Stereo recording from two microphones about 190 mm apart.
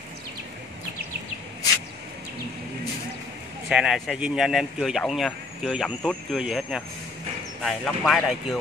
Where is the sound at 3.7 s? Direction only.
5° right (ahead or behind).